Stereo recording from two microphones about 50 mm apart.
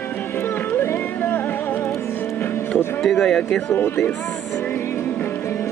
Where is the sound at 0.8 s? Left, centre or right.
Left.